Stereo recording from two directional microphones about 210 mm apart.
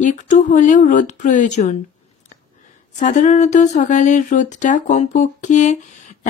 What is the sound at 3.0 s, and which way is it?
Speech, 35° left (ahead or behind).